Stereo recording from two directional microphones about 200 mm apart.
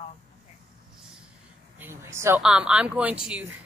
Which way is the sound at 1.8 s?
15° right (ahead or behind).